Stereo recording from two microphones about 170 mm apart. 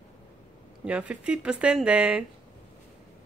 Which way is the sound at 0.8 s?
5° right (ahead or behind).